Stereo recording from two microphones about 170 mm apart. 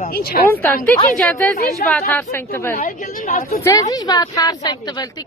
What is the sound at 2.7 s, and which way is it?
Speech, 55° left (ahead or behind).